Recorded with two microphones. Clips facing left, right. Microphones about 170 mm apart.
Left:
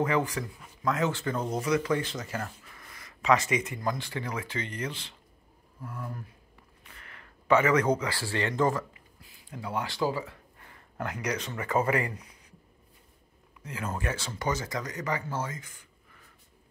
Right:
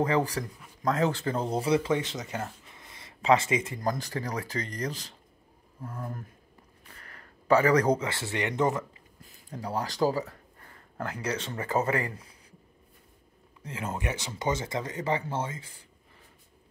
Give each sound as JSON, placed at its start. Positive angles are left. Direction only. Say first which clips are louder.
{"t": 0.0, "sound": "speech", "louder": "right 1 dB", "side_deg": -35}
{"t": 3.8, "sound": "speech", "louder": "right 2 dB", "side_deg": -40}
{"t": 9.2, "sound": "speech", "louder": "right 2 dB", "side_deg": -40}
{"t": 12.2, "sound": "a sound", "louder": "even", "side_deg": -30}
{"t": 13.6, "sound": "speech", "louder": "even", "side_deg": -25}